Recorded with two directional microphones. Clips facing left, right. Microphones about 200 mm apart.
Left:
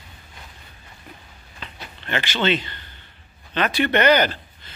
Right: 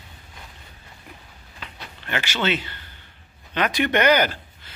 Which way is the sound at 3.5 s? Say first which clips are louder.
Left 1 dB; 15° right (ahead or behind).